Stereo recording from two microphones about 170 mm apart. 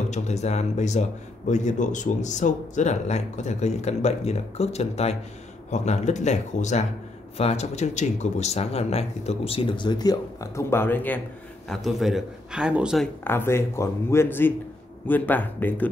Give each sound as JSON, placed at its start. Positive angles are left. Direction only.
{"t": 0.1, "sound": "speech", "side_deg": 40}
{"t": 11.7, "sound": "a man's voice", "side_deg": 0}
{"t": 13.2, "sound": "speech", "side_deg": 15}